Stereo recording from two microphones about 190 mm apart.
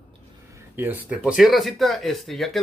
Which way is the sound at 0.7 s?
10° right (ahead or behind).